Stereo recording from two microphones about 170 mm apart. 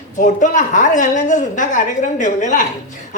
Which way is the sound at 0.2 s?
45° left (ahead or behind).